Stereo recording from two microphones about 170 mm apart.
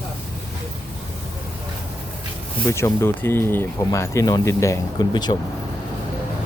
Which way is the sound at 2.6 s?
15° left (ahead or behind).